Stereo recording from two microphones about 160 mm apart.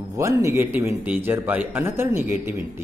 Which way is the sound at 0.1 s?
20° right (ahead or behind).